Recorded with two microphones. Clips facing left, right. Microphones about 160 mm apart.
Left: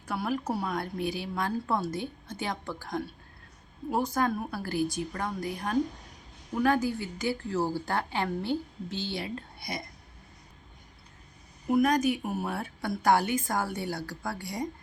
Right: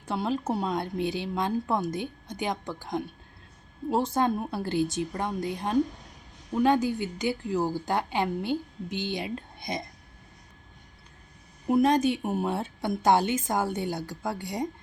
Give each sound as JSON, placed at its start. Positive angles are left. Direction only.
{"t": 0.0, "sound": "a woman's voice", "side_deg": -25}
{"t": 11.7, "sound": "a woman's voice", "side_deg": -25}